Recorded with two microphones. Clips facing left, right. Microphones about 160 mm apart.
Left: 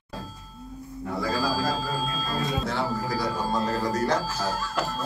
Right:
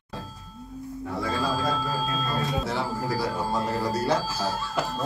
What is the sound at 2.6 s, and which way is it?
Music, 5° right (ahead or behind).